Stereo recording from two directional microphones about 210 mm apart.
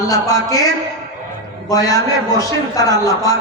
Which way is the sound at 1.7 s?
15° left (ahead or behind).